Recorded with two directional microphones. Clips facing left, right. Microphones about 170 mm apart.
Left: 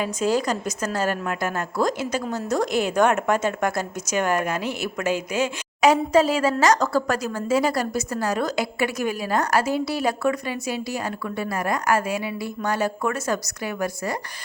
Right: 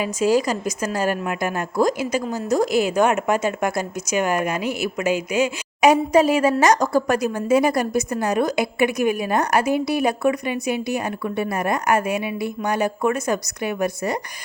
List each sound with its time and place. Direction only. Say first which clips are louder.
0.0 s speech: right 3 dB; 10° right (ahead or behind)